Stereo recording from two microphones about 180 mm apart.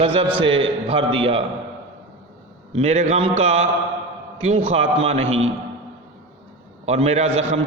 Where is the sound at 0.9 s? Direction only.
30° right (ahead or behind).